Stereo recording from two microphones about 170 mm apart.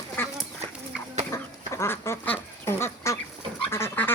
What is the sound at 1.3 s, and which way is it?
Duck, 15° left (ahead or behind).